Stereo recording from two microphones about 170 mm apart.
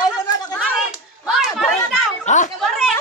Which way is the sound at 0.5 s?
5° right (ahead or behind).